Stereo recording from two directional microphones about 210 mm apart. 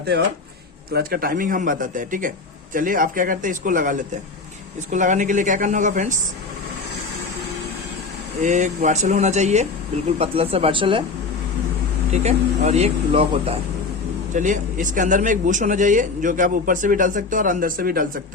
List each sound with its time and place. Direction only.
0.9 s a man's voice: 45° right (ahead or behind)
8.4 s a man's voice: 35° right (ahead or behind)
12.1 s a man's voice: 30° right (ahead or behind)